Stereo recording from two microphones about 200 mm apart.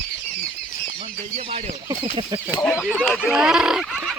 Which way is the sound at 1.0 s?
30° right (ahead or behind).